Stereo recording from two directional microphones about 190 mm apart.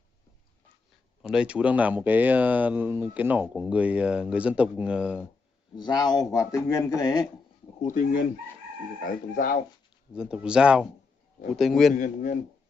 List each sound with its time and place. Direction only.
1.2 s speech: 5° right (ahead or behind)
5.8 s speech: 20° left (ahead or behind)
7.8 s speech: 45° left (ahead or behind)
10.1 s speech: 5° right (ahead or behind)
11.9 s speech: 45° left (ahead or behind)